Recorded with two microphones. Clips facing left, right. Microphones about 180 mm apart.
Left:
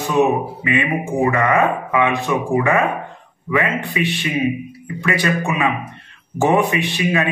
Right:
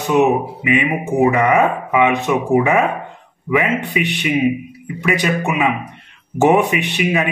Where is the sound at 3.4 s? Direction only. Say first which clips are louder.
Right 2 dB; 15° right (ahead or behind).